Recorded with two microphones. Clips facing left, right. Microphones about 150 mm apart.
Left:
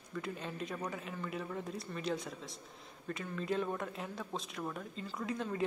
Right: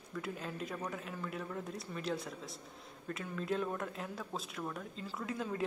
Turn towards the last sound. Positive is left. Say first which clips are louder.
# left 1 dB
turn(degrees=0)  # may be behind; listen again after turning